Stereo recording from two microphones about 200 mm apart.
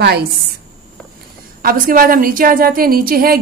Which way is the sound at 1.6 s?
45° right (ahead or behind).